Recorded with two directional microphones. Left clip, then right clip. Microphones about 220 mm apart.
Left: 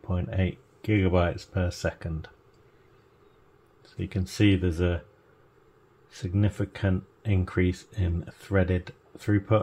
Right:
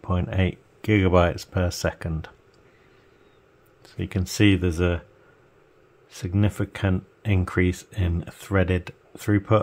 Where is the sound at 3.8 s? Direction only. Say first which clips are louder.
Right 4 dB; 30° right (ahead or behind).